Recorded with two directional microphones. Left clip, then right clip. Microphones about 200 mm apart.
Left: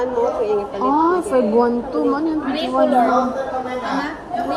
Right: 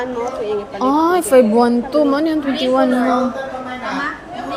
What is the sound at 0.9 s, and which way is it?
A woman's voice, 60° right (ahead or behind).